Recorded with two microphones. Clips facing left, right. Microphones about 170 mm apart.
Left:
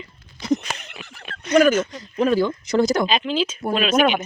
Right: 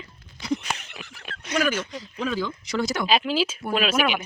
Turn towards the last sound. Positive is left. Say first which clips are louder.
# left 5 dB
turn(degrees=-5)  # may be behind; listen again after turning